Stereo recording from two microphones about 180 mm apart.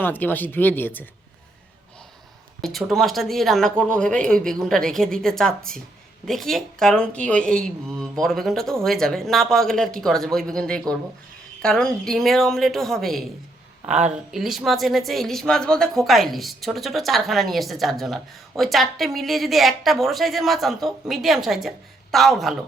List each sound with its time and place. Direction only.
0.0 s speech: 10° left (ahead or behind)
2.6 s speech: centre (ahead or behind)
14.3 s speech: centre (ahead or behind)